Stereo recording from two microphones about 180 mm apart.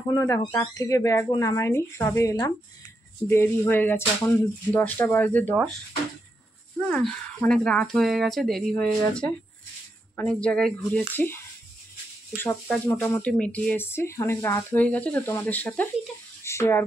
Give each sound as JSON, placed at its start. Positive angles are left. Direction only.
{"t": 0.1, "sound": "speech", "side_deg": 20}
{"t": 6.9, "sound": "speech", "side_deg": 5}